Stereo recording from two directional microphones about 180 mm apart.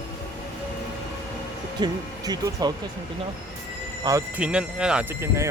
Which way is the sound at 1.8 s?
20° right (ahead or behind).